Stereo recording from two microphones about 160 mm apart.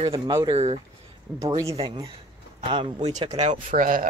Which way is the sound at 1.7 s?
30° right (ahead or behind).